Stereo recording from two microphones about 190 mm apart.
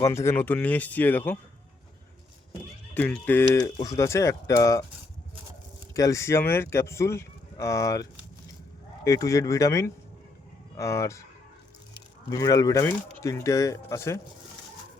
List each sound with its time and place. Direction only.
0.0 s speech: 15° left (ahead or behind)
2.9 s speech: 10° left (ahead or behind)
5.9 s speech: 15° left (ahead or behind)
9.0 s speech: 15° left (ahead or behind)
12.3 s speech: 15° left (ahead or behind)